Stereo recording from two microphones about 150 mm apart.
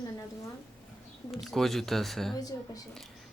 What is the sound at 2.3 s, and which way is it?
Speech, 25° left (ahead or behind).